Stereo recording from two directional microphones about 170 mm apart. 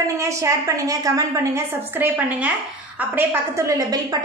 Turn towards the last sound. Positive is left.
turn(degrees=-20)  # may be behind; listen again after turning